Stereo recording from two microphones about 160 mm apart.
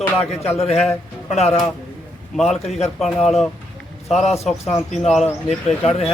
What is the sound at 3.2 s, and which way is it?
A man's voice, 45° left (ahead or behind).